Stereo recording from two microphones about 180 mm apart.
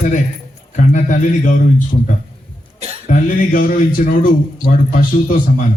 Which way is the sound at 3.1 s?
50° left (ahead or behind).